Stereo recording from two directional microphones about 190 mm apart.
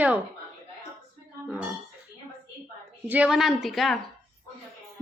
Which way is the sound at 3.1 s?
5° right (ahead or behind).